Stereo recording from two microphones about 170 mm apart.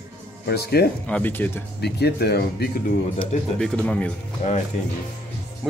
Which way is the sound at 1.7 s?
75° left (ahead or behind).